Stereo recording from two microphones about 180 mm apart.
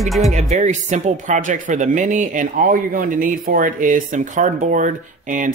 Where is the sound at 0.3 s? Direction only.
40° right (ahead or behind).